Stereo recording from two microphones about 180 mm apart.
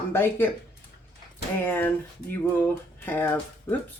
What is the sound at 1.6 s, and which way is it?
Speech, 10° left (ahead or behind).